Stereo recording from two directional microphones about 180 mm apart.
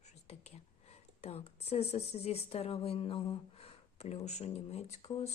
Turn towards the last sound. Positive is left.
turn(degrees=35)  # may be behind; listen again after turning